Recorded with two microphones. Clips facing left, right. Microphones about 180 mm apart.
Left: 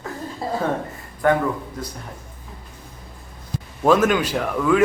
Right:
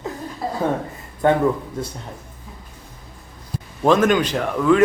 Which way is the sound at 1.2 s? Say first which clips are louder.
Right 1 dB; 25° right (ahead or behind).